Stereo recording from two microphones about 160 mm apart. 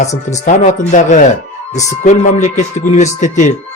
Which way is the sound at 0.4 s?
50° left (ahead or behind).